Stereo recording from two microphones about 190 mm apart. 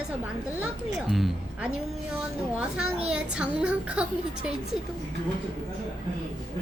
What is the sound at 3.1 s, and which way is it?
A woman's voice, 5° right (ahead or behind).